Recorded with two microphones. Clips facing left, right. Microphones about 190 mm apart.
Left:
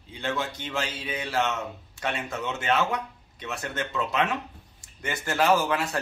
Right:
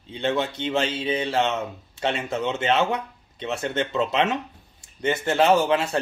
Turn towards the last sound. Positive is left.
turn(degrees=-25)  # may be behind; listen again after turning